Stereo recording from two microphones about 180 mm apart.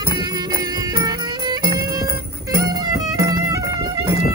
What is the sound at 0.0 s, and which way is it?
Music, 20° right (ahead or behind).